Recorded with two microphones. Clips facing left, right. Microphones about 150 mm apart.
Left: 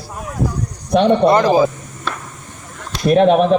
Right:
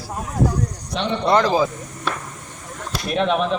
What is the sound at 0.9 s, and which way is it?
Speech, 55° left (ahead or behind).